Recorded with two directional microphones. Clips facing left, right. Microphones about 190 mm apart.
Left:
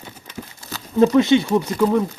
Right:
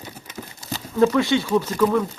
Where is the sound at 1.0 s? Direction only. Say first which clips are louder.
Left 4 dB; 20° left (ahead or behind).